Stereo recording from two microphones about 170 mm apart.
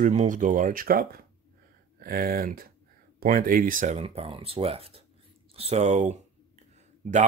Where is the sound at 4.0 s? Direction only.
35° right (ahead or behind).